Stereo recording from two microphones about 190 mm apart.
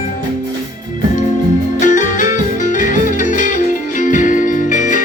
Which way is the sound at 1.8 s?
40° left (ahead or behind).